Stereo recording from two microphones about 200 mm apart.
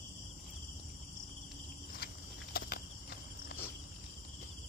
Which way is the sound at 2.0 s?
50° left (ahead or behind).